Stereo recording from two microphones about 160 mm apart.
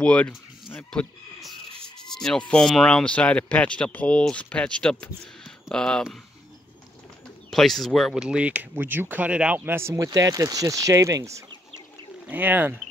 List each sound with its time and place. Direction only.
0.0 s speech: 5° left (ahead or behind)
7.5 s speech: centre (ahead or behind)